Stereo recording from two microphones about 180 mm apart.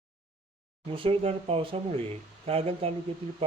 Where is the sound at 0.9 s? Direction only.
30° right (ahead or behind).